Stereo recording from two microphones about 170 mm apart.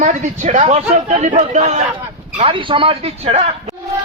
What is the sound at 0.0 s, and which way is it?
Speech, 45° right (ahead or behind).